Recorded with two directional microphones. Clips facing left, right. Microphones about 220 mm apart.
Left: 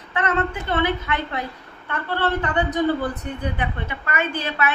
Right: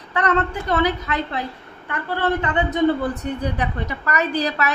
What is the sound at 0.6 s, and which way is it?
Speech, 35° right (ahead or behind).